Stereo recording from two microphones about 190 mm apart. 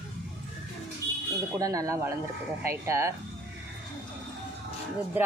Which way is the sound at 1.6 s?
20° right (ahead or behind).